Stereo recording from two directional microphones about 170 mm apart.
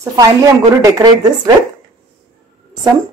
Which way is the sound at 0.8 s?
20° right (ahead or behind).